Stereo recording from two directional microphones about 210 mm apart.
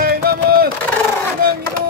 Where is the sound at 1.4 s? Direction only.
45° right (ahead or behind).